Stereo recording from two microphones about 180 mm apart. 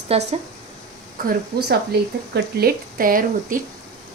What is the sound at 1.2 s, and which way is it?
Speech, 55° right (ahead or behind).